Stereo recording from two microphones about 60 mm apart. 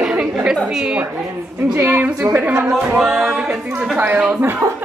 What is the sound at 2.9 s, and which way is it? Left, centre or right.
Speech, centre.